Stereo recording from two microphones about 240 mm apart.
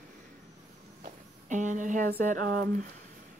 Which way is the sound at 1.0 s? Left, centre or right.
Right.